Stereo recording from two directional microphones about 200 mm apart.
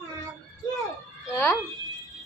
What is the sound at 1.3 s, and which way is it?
Speech, 10° left (ahead or behind).